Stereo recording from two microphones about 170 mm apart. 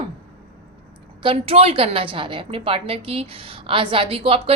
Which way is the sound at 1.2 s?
35° right (ahead or behind).